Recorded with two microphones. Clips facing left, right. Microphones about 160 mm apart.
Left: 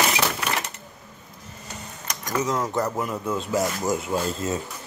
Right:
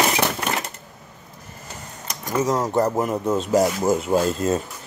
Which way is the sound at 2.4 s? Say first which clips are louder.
Right 5 dB; 40° right (ahead or behind).